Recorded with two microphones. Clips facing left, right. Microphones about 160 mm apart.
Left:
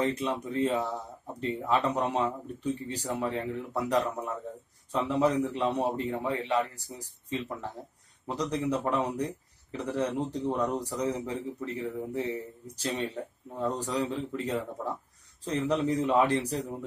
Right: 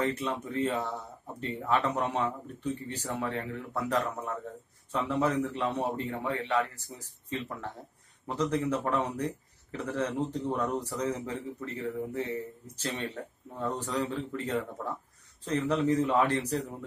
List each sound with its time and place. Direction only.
0.0 s a man's voice: 15° left (ahead or behind)